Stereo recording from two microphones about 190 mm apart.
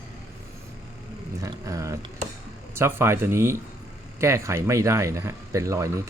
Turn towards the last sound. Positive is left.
turn(degrees=-15)  # may be behind; listen again after turning